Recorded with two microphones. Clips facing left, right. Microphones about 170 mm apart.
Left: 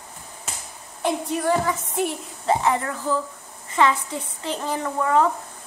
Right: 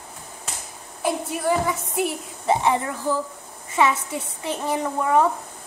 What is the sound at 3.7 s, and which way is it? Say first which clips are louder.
A woman's voice: even; 10° right (ahead or behind).